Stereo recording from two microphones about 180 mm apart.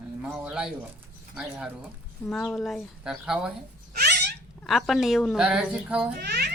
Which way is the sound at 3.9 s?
65° right (ahead or behind).